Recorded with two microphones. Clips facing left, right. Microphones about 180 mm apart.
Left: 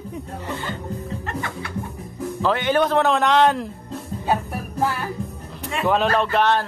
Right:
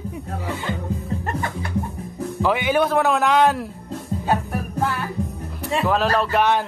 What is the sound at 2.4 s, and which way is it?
A man's voice, 10° right (ahead or behind).